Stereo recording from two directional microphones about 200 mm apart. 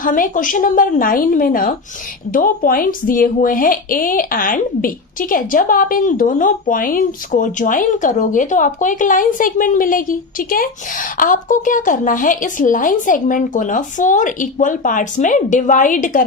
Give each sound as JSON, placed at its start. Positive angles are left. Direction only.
{"t": 0.0, "sound": "a woman's voice", "side_deg": 40}